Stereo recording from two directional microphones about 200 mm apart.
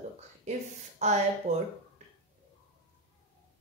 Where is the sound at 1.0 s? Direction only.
35° right (ahead or behind).